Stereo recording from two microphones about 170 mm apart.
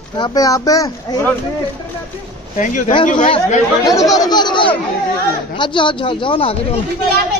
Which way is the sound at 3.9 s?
20° left (ahead or behind).